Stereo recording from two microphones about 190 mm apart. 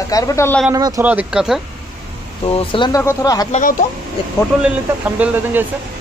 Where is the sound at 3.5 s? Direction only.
45° left (ahead or behind).